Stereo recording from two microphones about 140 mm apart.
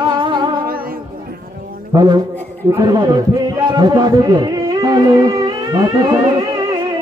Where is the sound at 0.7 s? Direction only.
90° right.